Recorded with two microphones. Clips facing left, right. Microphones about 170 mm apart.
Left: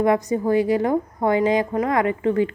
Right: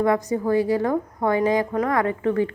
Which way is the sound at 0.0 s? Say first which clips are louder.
Left 2 dB; 20° left (ahead or behind).